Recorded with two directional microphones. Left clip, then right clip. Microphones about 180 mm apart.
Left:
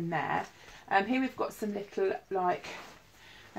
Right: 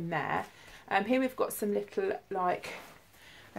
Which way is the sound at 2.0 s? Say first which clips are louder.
Left 4 dB; 35° right (ahead or behind).